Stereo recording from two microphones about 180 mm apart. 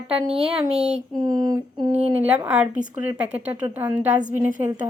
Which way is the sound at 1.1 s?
20° right (ahead or behind).